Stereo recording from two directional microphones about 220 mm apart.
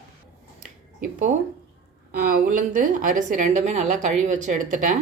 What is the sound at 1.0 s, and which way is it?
A woman's voice, 35° right (ahead or behind).